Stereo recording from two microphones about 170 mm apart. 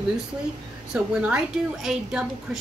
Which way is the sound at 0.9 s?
5° right (ahead or behind).